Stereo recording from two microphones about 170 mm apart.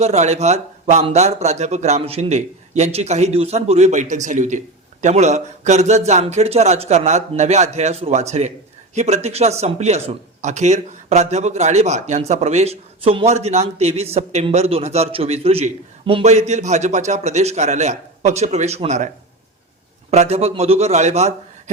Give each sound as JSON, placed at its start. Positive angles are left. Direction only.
{"t": 0.0, "sound": "speech", "side_deg": -40}